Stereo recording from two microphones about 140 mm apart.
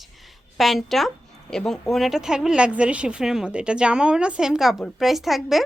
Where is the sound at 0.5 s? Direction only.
Centre (ahead or behind).